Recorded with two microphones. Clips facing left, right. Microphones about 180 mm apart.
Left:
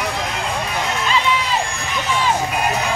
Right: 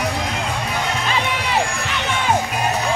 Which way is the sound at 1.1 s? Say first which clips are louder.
Left 2 dB; 60° right (ahead or behind).